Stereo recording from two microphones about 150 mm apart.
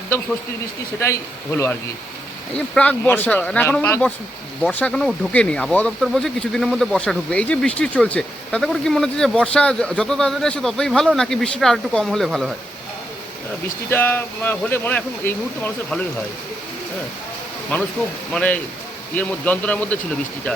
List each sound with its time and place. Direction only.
0.9 s speech: 20° left (ahead or behind)
2.7 s speech: 10° left (ahead or behind)
13.9 s speech: 15° left (ahead or behind)
17.7 s speech: 10° left (ahead or behind)